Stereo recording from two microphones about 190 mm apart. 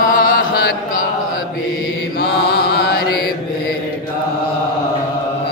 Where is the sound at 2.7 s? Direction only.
55° left (ahead or behind).